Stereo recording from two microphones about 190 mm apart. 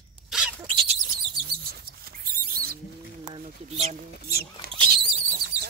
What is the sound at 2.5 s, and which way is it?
Bird, 50° right (ahead or behind).